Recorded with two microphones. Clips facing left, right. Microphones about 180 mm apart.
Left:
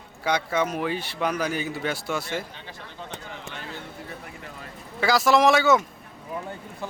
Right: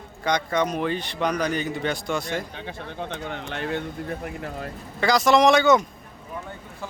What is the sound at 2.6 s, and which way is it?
Speech, 55° right (ahead or behind).